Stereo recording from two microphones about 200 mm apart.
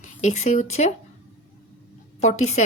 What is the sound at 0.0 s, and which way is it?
Speech, 35° left (ahead or behind).